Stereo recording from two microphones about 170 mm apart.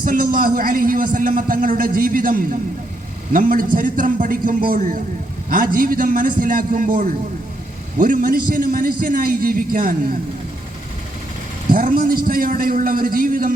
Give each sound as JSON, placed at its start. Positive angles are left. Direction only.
{"t": 0.0, "sound": "a man's voice", "side_deg": -55}
{"t": 11.7, "sound": "a man's voice", "side_deg": -55}